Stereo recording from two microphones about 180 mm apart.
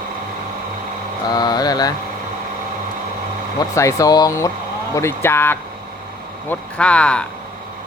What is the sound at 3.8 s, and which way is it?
Speech, 15° left (ahead or behind).